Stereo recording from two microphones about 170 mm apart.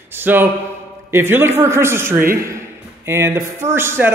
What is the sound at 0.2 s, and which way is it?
A man's voice, 10° right (ahead or behind).